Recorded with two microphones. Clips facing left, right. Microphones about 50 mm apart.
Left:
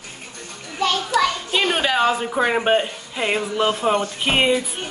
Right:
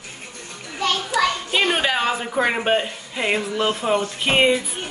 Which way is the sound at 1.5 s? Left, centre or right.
Centre.